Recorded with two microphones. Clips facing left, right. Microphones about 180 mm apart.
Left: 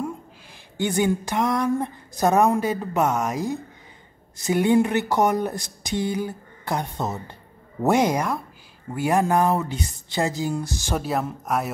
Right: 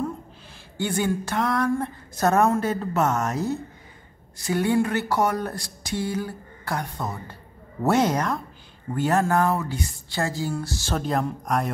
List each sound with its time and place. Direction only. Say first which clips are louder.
0.7 s speech: left 3 dB; 20° left (ahead or behind)
4.4 s a sound: left 3 dB; 20° left (ahead or behind)
7.8 s speech: left 1 dB; 15° left (ahead or behind)